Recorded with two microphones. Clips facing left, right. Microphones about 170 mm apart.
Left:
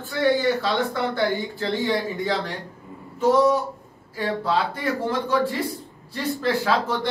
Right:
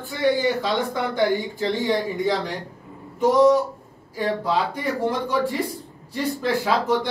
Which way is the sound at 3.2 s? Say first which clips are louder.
Right 2 dB; 15° right (ahead or behind).